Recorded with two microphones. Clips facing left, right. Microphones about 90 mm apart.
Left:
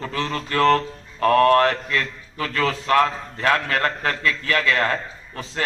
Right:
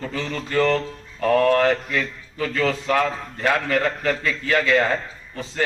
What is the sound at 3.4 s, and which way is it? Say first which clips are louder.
A man's voice: even; 65° left (ahead or behind).